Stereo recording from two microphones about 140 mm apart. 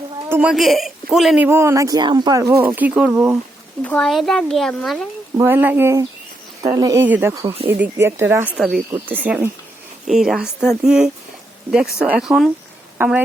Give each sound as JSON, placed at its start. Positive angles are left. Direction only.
{"t": 0.3, "sound": "a woman's voice", "side_deg": -10}
{"t": 0.5, "sound": "a man's voice", "side_deg": 0}
{"t": 1.5, "sound": "speech", "side_deg": -20}
{"t": 3.8, "sound": "speech", "side_deg": 5}
{"t": 5.4, "sound": "speech", "side_deg": -15}
{"t": 7.0, "sound": "speech", "side_deg": -15}
{"t": 8.5, "sound": "speech", "side_deg": 0}
{"t": 8.9, "sound": "speech", "side_deg": -15}
{"t": 13.0, "sound": "speech", "side_deg": -15}